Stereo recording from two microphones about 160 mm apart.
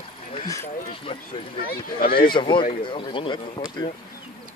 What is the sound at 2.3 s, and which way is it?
Speech, 30° left (ahead or behind).